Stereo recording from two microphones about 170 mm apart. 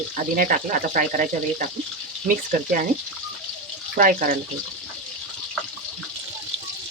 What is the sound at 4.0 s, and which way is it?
Speech, 55° right (ahead or behind).